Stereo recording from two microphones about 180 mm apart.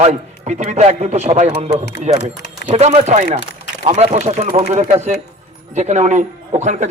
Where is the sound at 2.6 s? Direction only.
40° right (ahead or behind).